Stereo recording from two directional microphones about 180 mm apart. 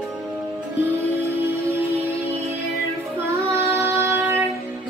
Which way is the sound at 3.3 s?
15° right (ahead or behind).